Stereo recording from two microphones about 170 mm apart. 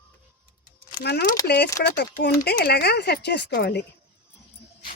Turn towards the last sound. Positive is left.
turn(degrees=80)